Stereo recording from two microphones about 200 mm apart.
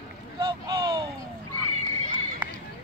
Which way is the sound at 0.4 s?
20° right (ahead or behind).